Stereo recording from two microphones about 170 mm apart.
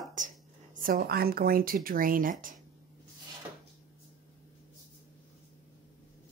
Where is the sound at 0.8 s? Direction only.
60° right (ahead or behind).